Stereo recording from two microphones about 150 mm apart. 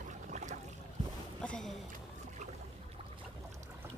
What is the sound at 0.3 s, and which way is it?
Boat, 50° right (ahead or behind).